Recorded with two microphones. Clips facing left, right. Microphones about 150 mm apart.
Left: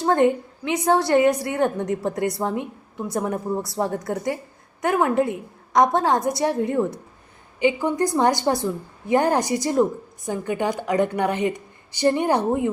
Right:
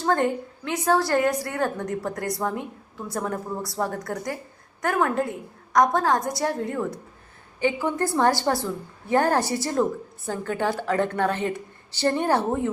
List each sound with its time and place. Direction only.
0.0 s a woman's voice: 20° left (ahead or behind)